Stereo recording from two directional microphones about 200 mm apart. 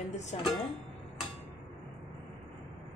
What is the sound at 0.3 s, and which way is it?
Speech, 35° left (ahead or behind).